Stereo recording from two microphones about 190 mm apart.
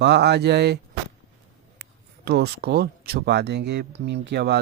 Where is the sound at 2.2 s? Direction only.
60° right (ahead or behind).